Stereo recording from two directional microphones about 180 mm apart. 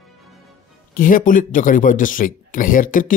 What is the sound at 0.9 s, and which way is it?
Speech, 50° left (ahead or behind).